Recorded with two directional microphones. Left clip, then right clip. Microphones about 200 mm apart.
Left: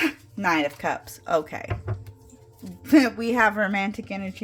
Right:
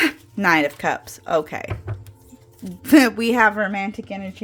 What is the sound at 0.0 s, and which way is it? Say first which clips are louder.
A woman's voice: right 5 dB; 35° right (ahead or behind).